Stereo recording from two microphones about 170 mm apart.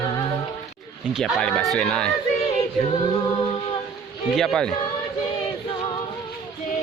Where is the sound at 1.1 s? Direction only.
Centre (ahead or behind).